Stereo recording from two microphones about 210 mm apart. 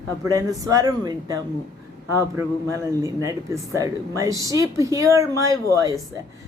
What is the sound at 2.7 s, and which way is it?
Speech, 15° right (ahead or behind).